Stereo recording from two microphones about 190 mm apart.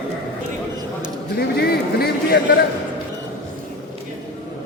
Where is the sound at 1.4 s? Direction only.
55° left (ahead or behind).